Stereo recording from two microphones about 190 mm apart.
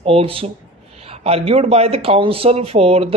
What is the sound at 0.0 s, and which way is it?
Speech, 30° right (ahead or behind).